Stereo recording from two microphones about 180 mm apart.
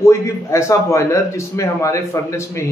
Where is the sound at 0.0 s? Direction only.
15° left (ahead or behind).